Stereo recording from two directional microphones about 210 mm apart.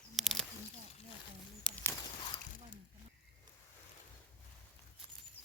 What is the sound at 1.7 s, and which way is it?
Bird, 10° left (ahead or behind).